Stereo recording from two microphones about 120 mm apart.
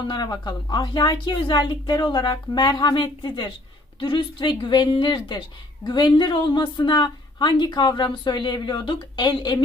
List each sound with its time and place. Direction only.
0.1 s a woman's voice: 40° left (ahead or behind)